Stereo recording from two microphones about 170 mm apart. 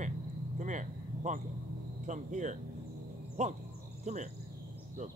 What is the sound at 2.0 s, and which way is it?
Speech, 45° right (ahead or behind).